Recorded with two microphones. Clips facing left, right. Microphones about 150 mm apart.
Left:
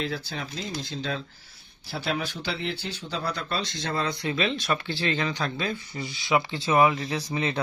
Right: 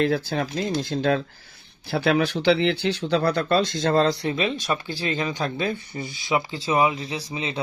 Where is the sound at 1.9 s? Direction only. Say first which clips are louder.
Right 9 dB; 65° right (ahead or behind); by 4.1 s 50° right (ahead or behind).